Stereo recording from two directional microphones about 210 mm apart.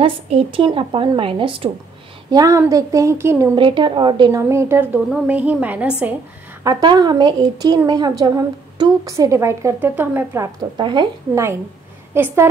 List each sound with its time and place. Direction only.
0.0 s a woman's voice: 25° right (ahead or behind)
3.5 s a woman's voice: 25° right (ahead or behind); by 6.1 s 5° right (ahead or behind)
6.6 s a woman's voice: 20° right (ahead or behind)
12.1 s a woman's voice: 10° right (ahead or behind)